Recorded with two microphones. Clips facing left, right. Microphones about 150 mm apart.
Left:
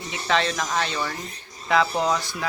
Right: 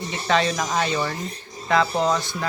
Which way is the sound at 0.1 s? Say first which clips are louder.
Right 2 dB; centre (ahead or behind).